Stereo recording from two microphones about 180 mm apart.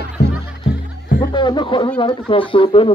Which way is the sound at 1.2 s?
25° left (ahead or behind).